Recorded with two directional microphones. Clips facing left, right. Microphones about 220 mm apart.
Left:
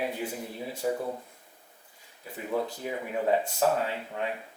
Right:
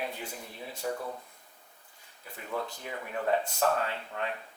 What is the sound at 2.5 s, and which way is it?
Speech, 10° left (ahead or behind).